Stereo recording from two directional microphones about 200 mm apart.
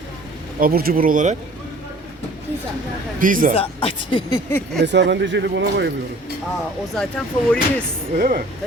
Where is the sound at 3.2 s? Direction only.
45° right (ahead or behind).